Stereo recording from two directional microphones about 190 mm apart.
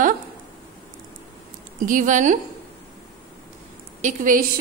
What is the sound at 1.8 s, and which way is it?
Speech, 40° right (ahead or behind).